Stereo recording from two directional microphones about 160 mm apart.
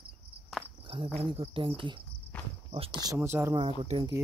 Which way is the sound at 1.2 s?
35° right (ahead or behind).